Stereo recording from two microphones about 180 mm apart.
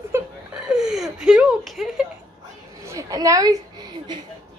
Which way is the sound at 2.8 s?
15° right (ahead or behind).